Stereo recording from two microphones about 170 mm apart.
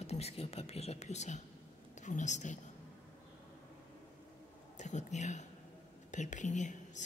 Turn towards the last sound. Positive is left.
turn(degrees=45)  # may be behind; listen again after turning